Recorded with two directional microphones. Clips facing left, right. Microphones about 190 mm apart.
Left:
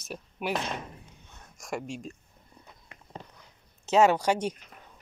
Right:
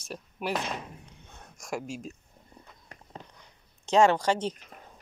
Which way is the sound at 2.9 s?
40° right (ahead or behind).